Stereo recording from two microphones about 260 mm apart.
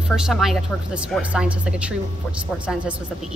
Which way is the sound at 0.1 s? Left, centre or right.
Centre.